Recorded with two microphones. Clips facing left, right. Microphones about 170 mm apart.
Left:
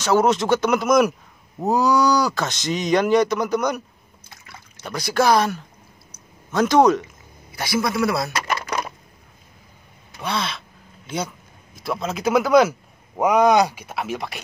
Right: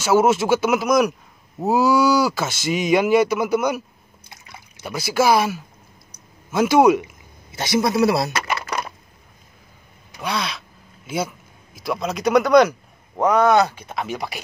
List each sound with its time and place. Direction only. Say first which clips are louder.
0.0 s a man's voice: right 1 dB; 5° right (ahead or behind)
4.3 s a sound: right 1 dB; 10° right (ahead or behind)
6.5 s speech: right 1 dB; 10° right (ahead or behind)
7.5 s a man's voice: right 3 dB; 25° right (ahead or behind)
10.2 s a man's voice: even; centre (ahead or behind)